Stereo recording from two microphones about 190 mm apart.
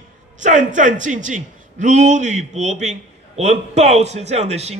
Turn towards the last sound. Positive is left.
turn(degrees=-35)  # may be behind; listen again after turning